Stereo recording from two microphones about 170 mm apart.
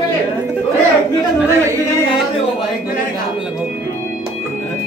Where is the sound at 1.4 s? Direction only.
15° right (ahead or behind).